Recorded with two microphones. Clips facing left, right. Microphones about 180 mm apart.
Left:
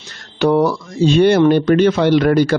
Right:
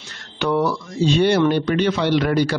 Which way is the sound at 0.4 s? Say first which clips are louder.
Left 6 dB; 45° left (ahead or behind).